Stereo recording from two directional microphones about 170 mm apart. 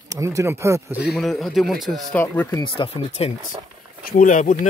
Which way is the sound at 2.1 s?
10° left (ahead or behind).